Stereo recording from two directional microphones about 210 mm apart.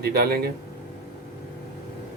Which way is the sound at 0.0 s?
50° right (ahead or behind).